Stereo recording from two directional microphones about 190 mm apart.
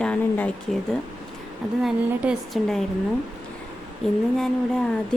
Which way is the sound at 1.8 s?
Centre (ahead or behind).